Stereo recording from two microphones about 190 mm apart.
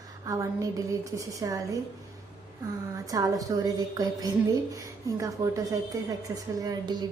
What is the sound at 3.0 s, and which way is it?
A woman's voice, 20° right (ahead or behind).